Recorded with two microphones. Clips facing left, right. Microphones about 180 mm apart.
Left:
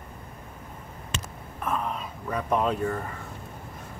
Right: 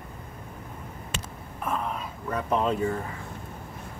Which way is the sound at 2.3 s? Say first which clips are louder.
Even; 5° left (ahead or behind).